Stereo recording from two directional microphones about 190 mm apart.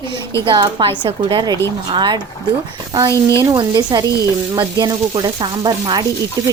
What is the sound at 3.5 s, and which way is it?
Speech, 20° right (ahead or behind).